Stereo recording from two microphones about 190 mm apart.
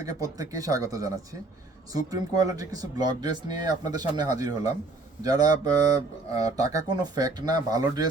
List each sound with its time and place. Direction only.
0.0 s speech: 20° right (ahead or behind)